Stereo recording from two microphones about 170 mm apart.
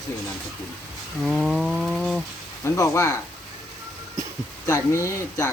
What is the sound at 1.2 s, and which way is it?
Speech, 5° right (ahead or behind).